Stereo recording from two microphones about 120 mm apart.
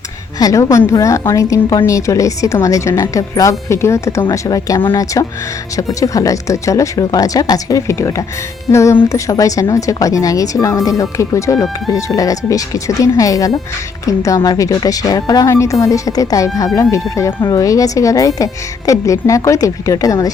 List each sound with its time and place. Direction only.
0.3 s a woman's voice: 30° left (ahead or behind)